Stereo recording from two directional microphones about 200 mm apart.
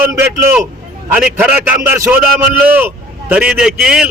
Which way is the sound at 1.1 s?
5° right (ahead or behind).